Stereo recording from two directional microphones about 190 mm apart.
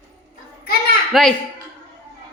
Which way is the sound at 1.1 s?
Centre (ahead or behind).